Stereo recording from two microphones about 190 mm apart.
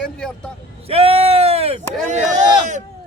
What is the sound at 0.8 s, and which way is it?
Speech, 30° right (ahead or behind).